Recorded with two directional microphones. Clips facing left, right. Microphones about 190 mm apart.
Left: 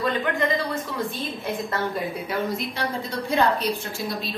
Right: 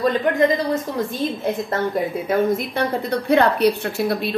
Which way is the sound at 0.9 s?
45° right (ahead or behind).